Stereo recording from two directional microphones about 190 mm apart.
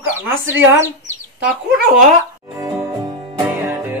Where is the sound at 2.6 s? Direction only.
25° right (ahead or behind).